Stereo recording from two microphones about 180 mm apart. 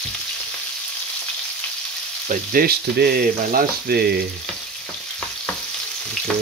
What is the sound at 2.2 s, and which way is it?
Frying, 55° right (ahead or behind).